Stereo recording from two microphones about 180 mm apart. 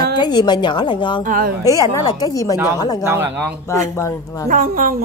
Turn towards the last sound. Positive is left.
turn(degrees=-50)  # may be behind; listen again after turning